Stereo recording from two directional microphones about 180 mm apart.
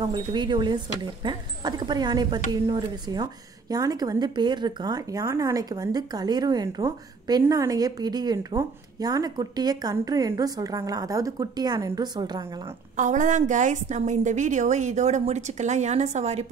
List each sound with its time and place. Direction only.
0.1 s speech: 25° right (ahead or behind)
12.9 s a woman's voice: 45° right (ahead or behind)